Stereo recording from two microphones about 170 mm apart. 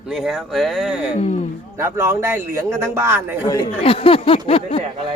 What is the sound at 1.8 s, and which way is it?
A man's voice, 15° right (ahead or behind).